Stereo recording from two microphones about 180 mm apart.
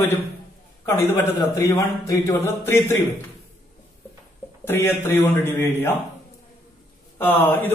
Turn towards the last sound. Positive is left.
turn(degrees=10)  # may be behind; listen again after turning